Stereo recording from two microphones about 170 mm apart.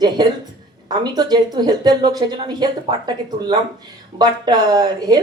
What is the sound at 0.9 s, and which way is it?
Speech, 25° right (ahead or behind).